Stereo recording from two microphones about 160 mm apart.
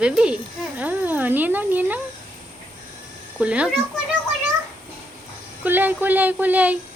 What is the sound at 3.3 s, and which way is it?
Speech, 5° right (ahead or behind).